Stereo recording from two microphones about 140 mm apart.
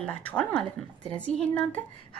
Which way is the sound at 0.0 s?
10° left (ahead or behind).